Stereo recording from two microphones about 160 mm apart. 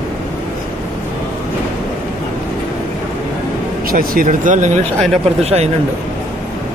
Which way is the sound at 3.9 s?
60° right (ahead or behind).